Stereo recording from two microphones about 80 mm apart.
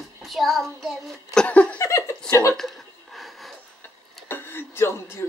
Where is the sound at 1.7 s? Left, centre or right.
Left.